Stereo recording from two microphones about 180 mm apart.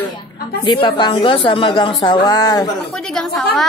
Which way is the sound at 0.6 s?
25° left (ahead or behind).